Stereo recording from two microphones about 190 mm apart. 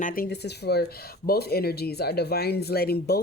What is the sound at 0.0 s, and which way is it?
Speech, 50° left (ahead or behind).